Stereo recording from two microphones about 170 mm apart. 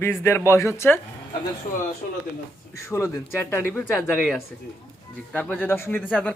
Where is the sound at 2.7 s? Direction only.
15° left (ahead or behind).